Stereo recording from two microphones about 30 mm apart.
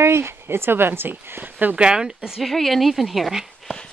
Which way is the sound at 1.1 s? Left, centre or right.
Right.